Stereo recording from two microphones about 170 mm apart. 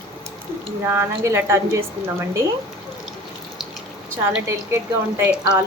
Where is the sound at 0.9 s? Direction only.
15° right (ahead or behind).